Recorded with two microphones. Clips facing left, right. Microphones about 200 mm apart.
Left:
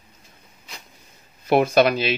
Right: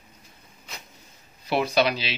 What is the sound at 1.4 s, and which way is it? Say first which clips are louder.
Speech: left 6 dB; 50° left (ahead or behind).